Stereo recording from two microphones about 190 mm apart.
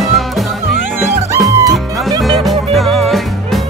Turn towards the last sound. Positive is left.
turn(degrees=0)  # may be behind; listen again after turning